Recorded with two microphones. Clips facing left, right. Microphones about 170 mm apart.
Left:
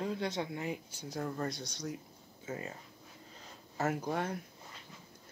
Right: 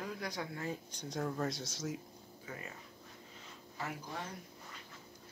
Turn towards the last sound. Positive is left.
turn(degrees=55)  # may be behind; listen again after turning